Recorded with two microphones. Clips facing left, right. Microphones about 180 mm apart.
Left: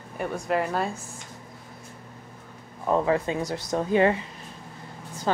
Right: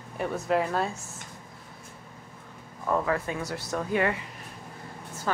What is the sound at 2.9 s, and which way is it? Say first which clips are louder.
Speech: left 4 dB; 20° left (ahead or behind).